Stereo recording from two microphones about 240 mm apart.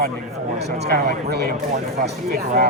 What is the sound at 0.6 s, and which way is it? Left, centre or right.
Speech, right.